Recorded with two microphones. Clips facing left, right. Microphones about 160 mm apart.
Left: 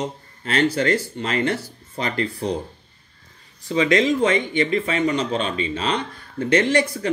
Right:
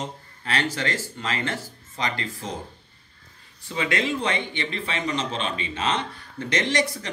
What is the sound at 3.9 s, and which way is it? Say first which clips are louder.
Speech: left 7 dB; 40° left (ahead or behind).